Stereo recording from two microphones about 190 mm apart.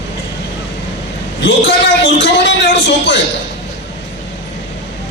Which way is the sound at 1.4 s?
70° left (ahead or behind).